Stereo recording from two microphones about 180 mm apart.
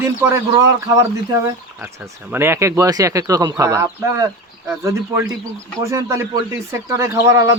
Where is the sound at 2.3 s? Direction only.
15° right (ahead or behind).